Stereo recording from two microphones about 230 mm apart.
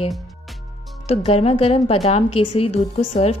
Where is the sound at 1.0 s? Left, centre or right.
Left.